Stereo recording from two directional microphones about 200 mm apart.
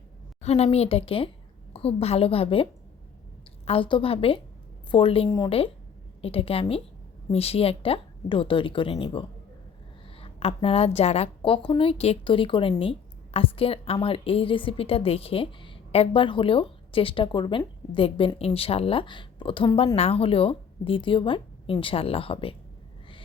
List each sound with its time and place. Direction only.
0.4 s a woman's voice: 30° left (ahead or behind)
3.7 s a woman's voice: 25° left (ahead or behind)